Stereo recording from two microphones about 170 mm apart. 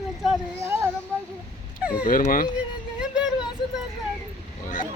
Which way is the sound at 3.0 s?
5° right (ahead or behind).